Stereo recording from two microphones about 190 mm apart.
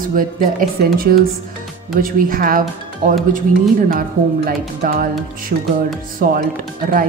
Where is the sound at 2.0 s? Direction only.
50° right (ahead or behind).